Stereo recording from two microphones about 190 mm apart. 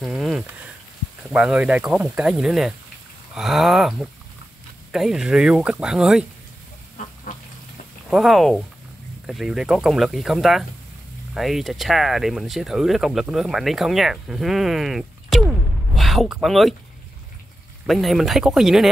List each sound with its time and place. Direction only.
0.0 s frying: centre (ahead or behind)
1.3 s speech: 5° right (ahead or behind)
7.0 s duck: 45° left (ahead or behind)
8.1 s speech: centre (ahead or behind)
17.8 s speech: centre (ahead or behind)